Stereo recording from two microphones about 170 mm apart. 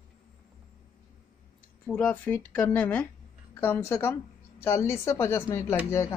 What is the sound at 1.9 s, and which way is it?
Speech, 10° left (ahead or behind).